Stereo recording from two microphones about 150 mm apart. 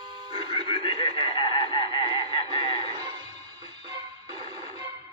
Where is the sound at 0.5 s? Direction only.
35° left (ahead or behind).